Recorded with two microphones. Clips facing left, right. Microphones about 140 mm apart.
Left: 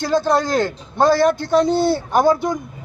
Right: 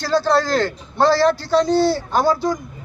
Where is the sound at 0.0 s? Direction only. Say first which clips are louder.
Even; 20° left (ahead or behind).